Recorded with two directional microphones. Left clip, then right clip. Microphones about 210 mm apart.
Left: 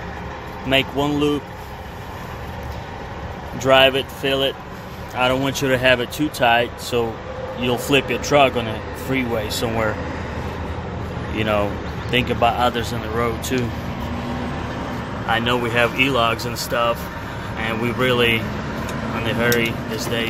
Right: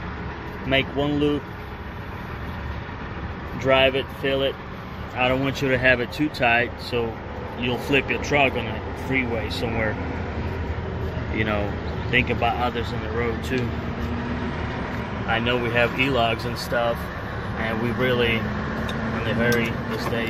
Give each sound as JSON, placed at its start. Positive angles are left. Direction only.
{"t": 0.7, "sound": "speech", "side_deg": 10}
{"t": 3.6, "sound": "speech", "side_deg": 10}
{"t": 8.1, "sound": "speech", "side_deg": 20}
{"t": 11.3, "sound": "speech", "side_deg": 10}
{"t": 15.2, "sound": "speech", "side_deg": 5}